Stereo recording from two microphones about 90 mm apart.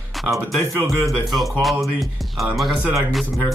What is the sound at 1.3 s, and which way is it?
Speech, centre (ahead or behind).